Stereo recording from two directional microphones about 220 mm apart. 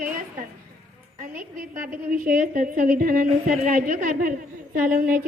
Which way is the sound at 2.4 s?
40° right (ahead or behind).